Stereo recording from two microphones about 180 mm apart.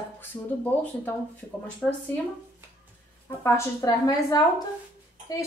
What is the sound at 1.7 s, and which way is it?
Speech, 10° left (ahead or behind).